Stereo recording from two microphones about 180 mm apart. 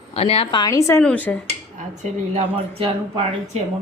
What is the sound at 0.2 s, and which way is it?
Speech, 35° left (ahead or behind).